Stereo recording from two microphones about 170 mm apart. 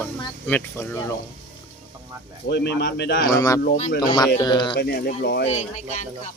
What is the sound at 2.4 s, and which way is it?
Speech, 80° left.